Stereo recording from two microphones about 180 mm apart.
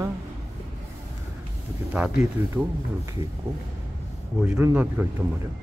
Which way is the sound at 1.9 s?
5° right (ahead or behind).